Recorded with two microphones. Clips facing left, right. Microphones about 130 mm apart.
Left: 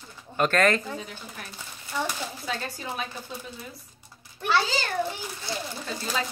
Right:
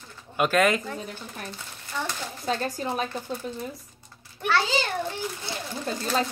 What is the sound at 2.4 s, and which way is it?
Speech, 40° right (ahead or behind).